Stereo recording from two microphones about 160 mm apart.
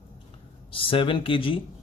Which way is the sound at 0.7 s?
35° left (ahead or behind).